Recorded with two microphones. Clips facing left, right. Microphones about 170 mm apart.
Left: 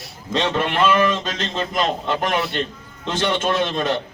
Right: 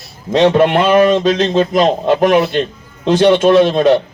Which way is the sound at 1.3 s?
40° right (ahead or behind).